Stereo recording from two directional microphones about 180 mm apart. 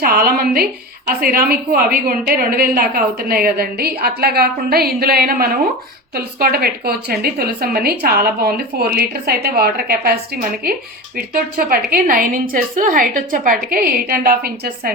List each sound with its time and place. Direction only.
0.0 s a woman's voice: 55° right (ahead or behind)